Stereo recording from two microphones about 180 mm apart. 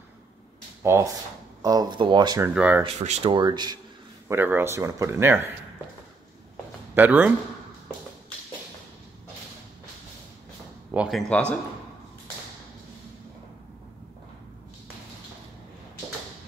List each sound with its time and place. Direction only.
0.8 s speech: 15° right (ahead or behind)
2.4 s speech: 10° right (ahead or behind)
2.8 s speech: 35° right (ahead or behind)
4.3 s speech: 10° right (ahead or behind)
7.0 s speech: 10° right (ahead or behind)
10.9 s speech: 5° right (ahead or behind)